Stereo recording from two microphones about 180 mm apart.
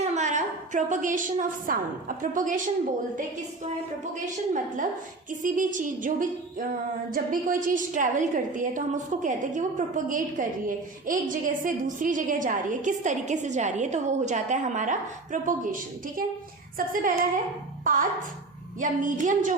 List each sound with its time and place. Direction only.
0.0 s a woman's voice: 40° right (ahead or behind)
4.1 s a woman's voice: 45° right (ahead or behind)
18.8 s a woman's voice: 45° right (ahead or behind)